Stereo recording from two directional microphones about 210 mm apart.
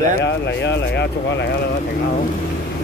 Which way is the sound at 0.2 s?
55° left (ahead or behind).